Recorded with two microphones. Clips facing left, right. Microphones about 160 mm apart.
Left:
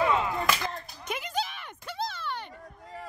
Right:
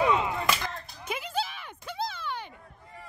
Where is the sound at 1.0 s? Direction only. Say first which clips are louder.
Even; 5° right (ahead or behind).